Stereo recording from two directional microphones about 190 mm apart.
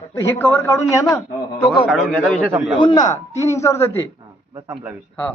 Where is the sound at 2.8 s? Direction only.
25° left (ahead or behind).